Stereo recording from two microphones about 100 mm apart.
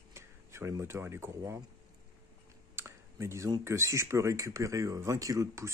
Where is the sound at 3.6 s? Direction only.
30° right (ahead or behind).